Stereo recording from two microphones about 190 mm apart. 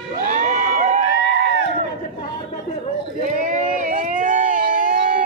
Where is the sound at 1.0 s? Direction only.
70° left (ahead or behind).